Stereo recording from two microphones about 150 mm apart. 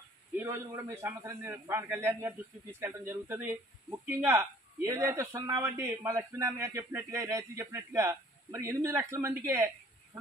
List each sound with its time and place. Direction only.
0.4 s speech: 15° right (ahead or behind)